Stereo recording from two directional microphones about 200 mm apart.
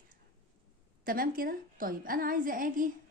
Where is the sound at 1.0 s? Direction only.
45° right (ahead or behind).